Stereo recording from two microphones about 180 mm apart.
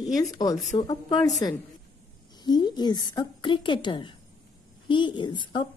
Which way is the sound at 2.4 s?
25° left (ahead or behind).